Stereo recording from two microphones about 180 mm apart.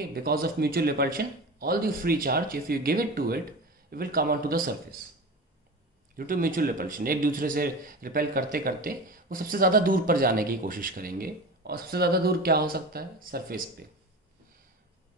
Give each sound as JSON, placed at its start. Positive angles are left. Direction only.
{"t": 0.1, "sound": "speech", "side_deg": -55}
{"t": 6.1, "sound": "speech", "side_deg": -50}